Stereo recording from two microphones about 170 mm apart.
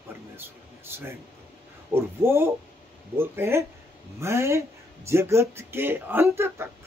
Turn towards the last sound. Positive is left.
turn(degrees=-15)  # may be behind; listen again after turning